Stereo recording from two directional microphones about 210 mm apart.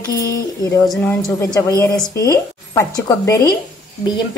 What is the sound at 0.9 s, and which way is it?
A woman's voice, 5° left (ahead or behind).